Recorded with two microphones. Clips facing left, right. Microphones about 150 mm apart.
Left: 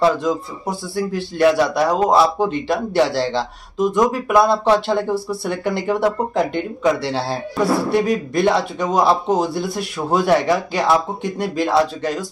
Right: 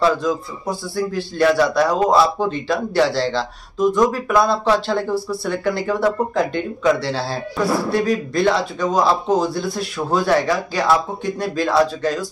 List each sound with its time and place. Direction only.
0.0 s a man's voice: 20° left (ahead or behind)